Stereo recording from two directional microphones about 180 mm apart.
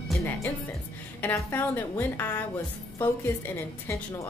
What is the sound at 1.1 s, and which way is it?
Speech, 10° left (ahead or behind).